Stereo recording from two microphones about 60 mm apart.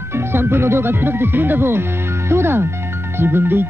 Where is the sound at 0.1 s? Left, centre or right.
Right.